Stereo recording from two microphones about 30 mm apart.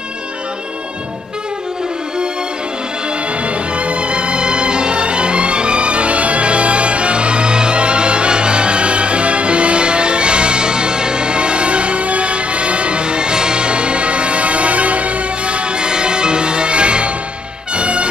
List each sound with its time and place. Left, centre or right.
3.4 s music: right